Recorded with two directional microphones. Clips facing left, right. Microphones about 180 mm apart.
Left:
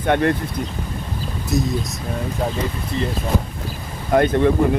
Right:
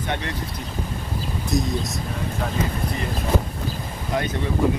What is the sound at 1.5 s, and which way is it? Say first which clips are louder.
Speech: left 2 dB; centre (ahead or behind).